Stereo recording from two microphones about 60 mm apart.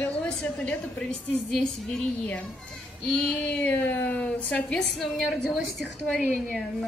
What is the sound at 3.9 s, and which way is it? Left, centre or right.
Speech, left.